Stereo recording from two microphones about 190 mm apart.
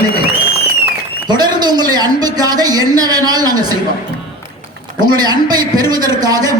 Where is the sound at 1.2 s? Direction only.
20° right (ahead or behind).